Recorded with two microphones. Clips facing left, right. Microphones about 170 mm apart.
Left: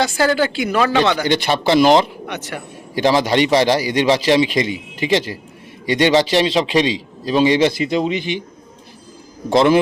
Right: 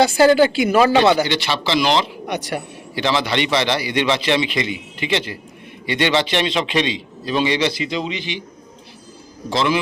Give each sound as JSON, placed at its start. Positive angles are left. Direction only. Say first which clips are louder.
{"t": 0.0, "sound": "speech", "louder": "right 4 dB", "side_deg": -15}
{"t": 1.2, "sound": "speech", "louder": "left 4 dB", "side_deg": 50}
{"t": 2.2, "sound": "speech", "louder": "right 3 dB", "side_deg": -15}
{"t": 2.9, "sound": "a man's voice", "louder": "left 5 dB", "side_deg": 45}
{"t": 9.5, "sound": "speech", "louder": "left 6 dB", "side_deg": 50}